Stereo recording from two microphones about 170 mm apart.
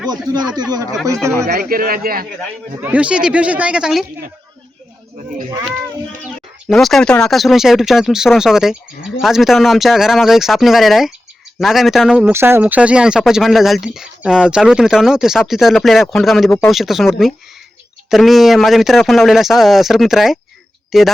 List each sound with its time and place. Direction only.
0.1 s speech: 25° right (ahead or behind)
1.5 s a man's voice: 60° right (ahead or behind)
2.8 s speech: 10° right (ahead or behind)
6.7 s speech: centre (ahead or behind)
18.1 s speech: centre (ahead or behind)